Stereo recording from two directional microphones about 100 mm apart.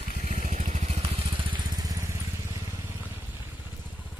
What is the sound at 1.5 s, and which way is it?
Vehicle, 40° right (ahead or behind).